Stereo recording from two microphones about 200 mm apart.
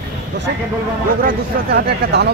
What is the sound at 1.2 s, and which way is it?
Speech, 55° right (ahead or behind).